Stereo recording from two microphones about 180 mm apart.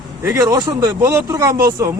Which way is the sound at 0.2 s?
15° right (ahead or behind).